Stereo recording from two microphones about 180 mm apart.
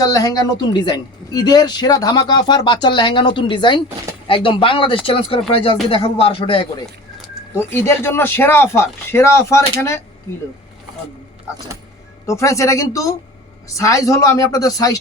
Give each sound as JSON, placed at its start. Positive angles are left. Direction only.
{"t": 0.0, "sound": "a man's voice", "side_deg": 20}
{"t": 7.5, "sound": "speech", "side_deg": 15}
{"t": 12.2, "sound": "a man's voice", "side_deg": 15}